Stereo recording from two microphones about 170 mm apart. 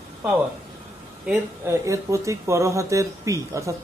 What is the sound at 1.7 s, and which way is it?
Speech, 15° right (ahead or behind).